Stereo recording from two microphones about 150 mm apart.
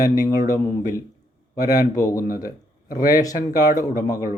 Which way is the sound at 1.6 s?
25° left (ahead or behind).